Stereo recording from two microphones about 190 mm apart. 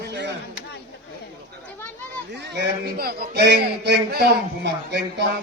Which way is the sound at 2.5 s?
55° right (ahead or behind).